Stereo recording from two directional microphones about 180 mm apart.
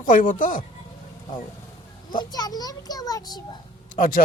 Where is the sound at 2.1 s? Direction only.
25° left (ahead or behind).